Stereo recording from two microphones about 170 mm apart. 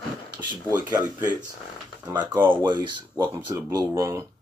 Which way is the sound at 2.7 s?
25° right (ahead or behind).